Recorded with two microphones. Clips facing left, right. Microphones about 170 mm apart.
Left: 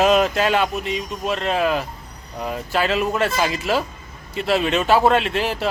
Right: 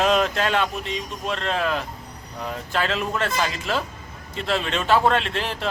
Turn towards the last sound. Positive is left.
turn(degrees=5)  # may be behind; listen again after turning